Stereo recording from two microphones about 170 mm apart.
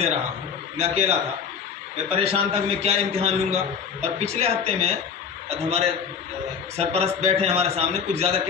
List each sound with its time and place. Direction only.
0.7 s a man's voice: 40° right (ahead or behind)